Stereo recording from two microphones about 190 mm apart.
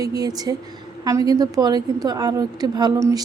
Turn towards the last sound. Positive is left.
turn(degrees=-20)  # may be behind; listen again after turning